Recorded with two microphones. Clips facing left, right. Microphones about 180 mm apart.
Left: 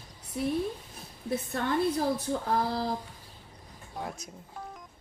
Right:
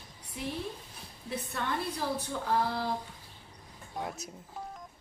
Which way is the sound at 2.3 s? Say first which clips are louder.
Left 2 dB; 40° left (ahead or behind).